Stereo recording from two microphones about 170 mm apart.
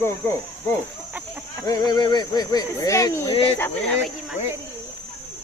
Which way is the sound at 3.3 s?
35° left (ahead or behind).